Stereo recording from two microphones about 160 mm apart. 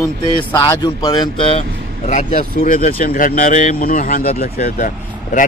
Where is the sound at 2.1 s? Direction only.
50° left (ahead or behind).